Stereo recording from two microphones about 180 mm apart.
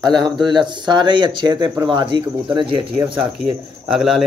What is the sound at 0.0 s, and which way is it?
Speech, 25° right (ahead or behind).